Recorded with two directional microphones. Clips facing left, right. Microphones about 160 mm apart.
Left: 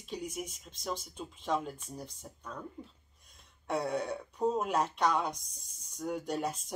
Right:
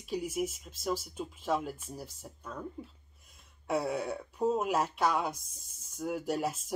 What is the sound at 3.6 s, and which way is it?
Speech, 5° right (ahead or behind).